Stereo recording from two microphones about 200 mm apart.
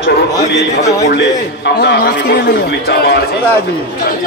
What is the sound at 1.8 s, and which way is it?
A man's voice, 55° left (ahead or behind).